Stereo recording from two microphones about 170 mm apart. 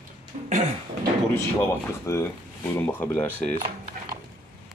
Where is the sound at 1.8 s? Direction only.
15° left (ahead or behind).